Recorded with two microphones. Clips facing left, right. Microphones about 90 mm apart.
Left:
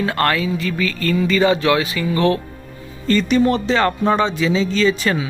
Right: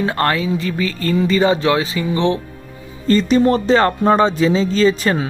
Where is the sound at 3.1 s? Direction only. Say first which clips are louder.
Right 2 dB; 35° right (ahead or behind).